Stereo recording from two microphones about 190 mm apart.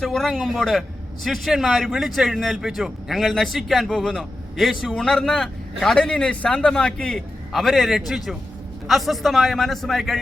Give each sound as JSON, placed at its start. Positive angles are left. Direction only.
{"t": 0.0, "sound": "a man's voice", "side_deg": 0}